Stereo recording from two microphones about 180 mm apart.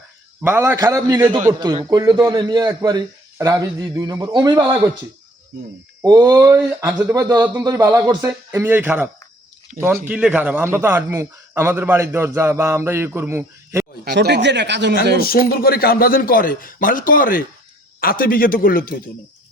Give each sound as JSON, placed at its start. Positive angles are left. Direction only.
{"t": 0.4, "sound": "a man's voice", "side_deg": -10}
{"t": 6.0, "sound": "a man's voice", "side_deg": -20}
{"t": 9.7, "sound": "speech", "side_deg": -45}
{"t": 10.1, "sound": "a man's voice", "side_deg": -10}
{"t": 14.0, "sound": "speech", "side_deg": -65}
{"t": 15.2, "sound": "speech", "side_deg": 55}